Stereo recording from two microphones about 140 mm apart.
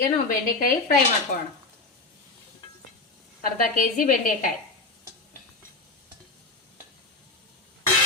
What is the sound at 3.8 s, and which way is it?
Speech, 75° left (ahead or behind).